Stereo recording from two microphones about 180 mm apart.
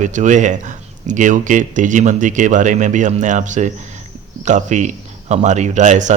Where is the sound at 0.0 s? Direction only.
45° right (ahead or behind).